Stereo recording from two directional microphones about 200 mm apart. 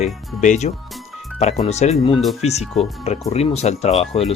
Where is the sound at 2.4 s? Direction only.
35° left (ahead or behind).